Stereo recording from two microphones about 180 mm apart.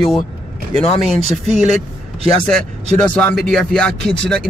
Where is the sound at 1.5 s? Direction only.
40° right (ahead or behind).